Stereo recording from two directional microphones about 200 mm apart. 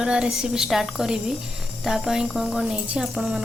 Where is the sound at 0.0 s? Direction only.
5° right (ahead or behind).